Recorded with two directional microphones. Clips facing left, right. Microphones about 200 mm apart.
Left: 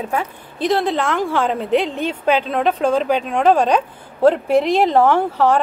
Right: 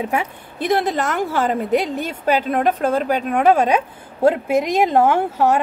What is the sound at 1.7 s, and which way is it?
Speech, 40° right (ahead or behind).